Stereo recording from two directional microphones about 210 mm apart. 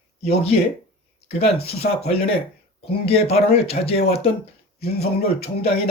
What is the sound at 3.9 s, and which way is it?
Speech, 45° left (ahead or behind).